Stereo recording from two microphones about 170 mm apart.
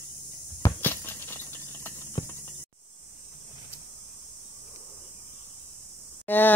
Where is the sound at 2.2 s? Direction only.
30° left (ahead or behind).